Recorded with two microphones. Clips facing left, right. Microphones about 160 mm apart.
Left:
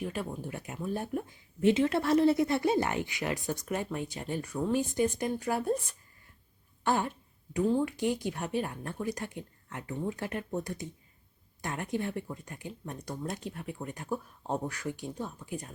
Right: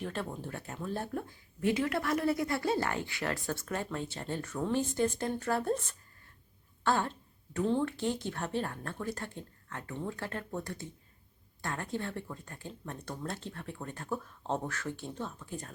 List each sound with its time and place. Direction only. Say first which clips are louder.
0.0 s speech: left 2 dB; 10° left (ahead or behind)